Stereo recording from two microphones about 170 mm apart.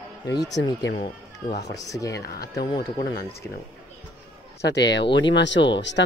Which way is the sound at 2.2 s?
65° left (ahead or behind).